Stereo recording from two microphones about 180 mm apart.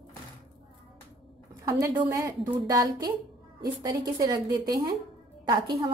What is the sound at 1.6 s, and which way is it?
A woman's voice, 15° right (ahead or behind).